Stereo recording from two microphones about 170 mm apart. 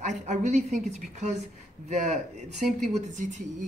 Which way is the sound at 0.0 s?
45° right (ahead or behind).